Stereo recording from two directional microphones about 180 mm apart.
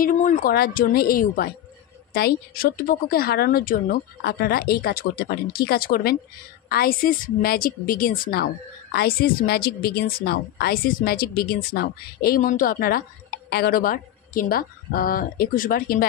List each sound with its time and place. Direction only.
0.0 s a woman's voice: 45° left (ahead or behind)